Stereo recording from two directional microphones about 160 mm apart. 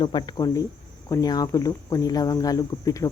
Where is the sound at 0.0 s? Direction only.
30° left (ahead or behind).